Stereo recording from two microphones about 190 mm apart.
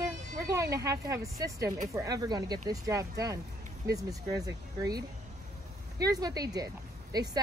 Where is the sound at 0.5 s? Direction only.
15° right (ahead or behind).